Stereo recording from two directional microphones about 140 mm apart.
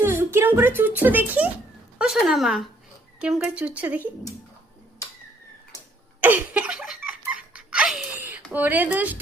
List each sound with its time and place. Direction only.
0.0 s speech: 15° right (ahead or behind)
6.1 s laughter: 10° right (ahead or behind)
8.5 s speech: 15° right (ahead or behind)